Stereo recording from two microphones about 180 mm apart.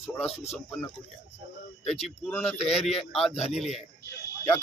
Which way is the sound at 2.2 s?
10° left (ahead or behind).